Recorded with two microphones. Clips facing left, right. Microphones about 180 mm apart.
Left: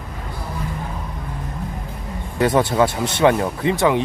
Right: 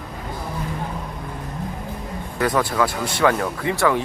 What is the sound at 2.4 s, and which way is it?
Speech, 25° left (ahead or behind).